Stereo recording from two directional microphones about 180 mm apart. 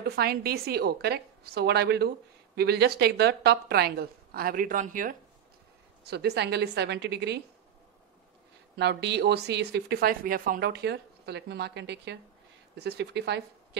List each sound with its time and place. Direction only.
0.0 s a woman's voice: 60° right (ahead or behind)
6.0 s speech: 65° right (ahead or behind)
8.7 s speech: 70° right (ahead or behind)